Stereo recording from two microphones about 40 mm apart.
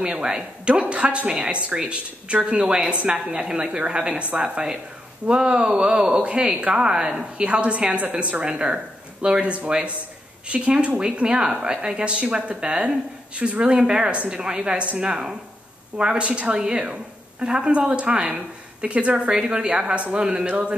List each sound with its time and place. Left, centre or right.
0.0 s speech: right
7.4 s a woman's voice: right